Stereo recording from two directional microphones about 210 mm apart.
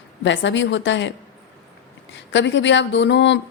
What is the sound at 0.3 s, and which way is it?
Speech, 60° left (ahead or behind).